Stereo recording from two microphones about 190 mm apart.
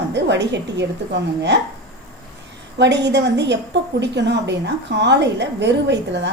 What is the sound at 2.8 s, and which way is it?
Speech, 65° right (ahead or behind).